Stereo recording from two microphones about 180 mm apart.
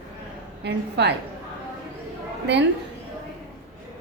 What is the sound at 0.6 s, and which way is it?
Speech, 70° right (ahead or behind).